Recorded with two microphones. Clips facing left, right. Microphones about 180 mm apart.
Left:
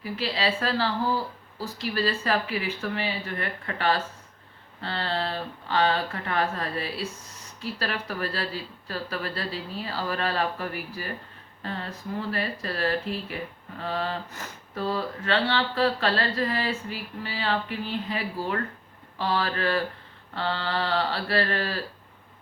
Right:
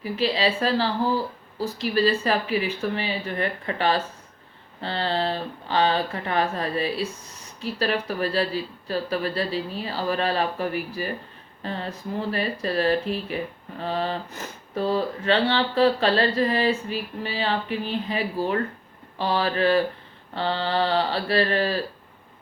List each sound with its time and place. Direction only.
0.0 s speech: 20° right (ahead or behind)